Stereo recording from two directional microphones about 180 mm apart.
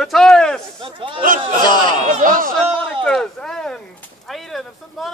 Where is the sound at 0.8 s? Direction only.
25° right (ahead or behind).